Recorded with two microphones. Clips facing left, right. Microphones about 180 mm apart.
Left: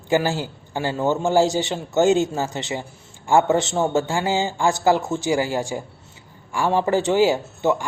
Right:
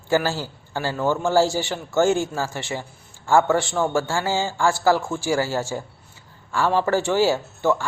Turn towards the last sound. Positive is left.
turn(degrees=20)  # may be behind; listen again after turning